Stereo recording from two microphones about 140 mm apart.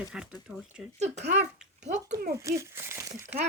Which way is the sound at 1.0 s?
55° right (ahead or behind).